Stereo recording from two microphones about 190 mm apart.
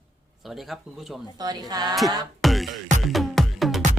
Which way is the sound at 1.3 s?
20° right (ahead or behind).